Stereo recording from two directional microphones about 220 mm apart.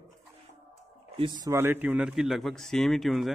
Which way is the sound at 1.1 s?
20° right (ahead or behind).